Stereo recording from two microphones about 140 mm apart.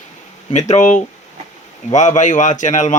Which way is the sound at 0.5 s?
55° left (ahead or behind).